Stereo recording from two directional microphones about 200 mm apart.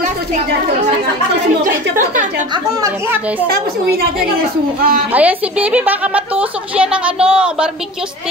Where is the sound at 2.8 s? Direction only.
10° right (ahead or behind).